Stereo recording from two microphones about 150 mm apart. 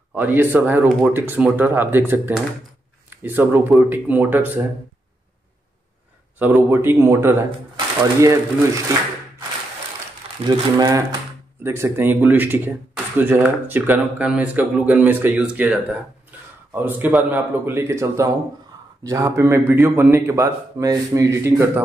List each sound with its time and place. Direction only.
0.1 s speech: 15° right (ahead or behind)
6.4 s speech: 15° right (ahead or behind)
7.7 s a sound: 25° right (ahead or behind)
10.4 s a man's voice: 25° right (ahead or behind)